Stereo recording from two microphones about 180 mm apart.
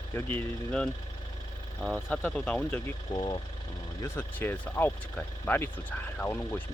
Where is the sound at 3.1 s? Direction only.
25° left (ahead or behind).